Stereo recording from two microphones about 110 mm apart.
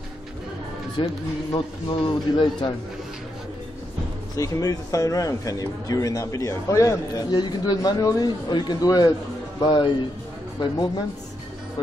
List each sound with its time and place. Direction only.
1.0 s speech: 50° left (ahead or behind)
4.4 s a man's voice: 30° left (ahead or behind)